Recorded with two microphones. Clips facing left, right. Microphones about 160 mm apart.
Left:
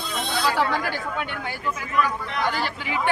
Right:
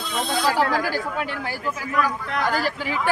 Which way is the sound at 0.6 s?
5° right (ahead or behind).